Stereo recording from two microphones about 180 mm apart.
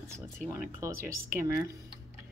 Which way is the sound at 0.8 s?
15° right (ahead or behind).